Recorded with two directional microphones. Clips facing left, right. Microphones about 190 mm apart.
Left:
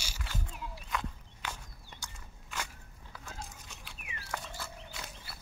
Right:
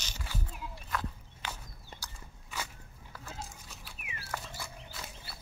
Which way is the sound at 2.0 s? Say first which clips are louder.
Even; 5° right (ahead or behind).